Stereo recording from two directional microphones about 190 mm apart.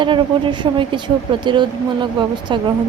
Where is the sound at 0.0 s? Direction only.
25° right (ahead or behind).